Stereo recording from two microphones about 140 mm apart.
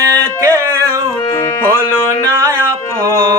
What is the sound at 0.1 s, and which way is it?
Music, 20° right (ahead or behind).